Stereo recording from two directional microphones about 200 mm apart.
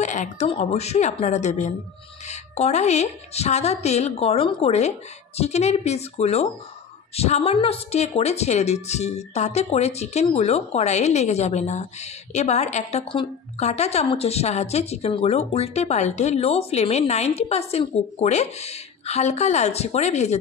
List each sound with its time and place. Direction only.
0.0 s a woman's voice: 35° left (ahead or behind)